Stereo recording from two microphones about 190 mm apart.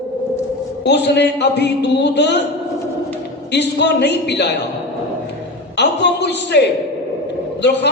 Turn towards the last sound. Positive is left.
turn(degrees=65)  # may be behind; listen again after turning